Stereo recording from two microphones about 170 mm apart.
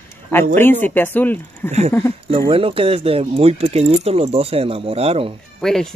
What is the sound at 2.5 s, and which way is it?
Speech, 35° right (ahead or behind).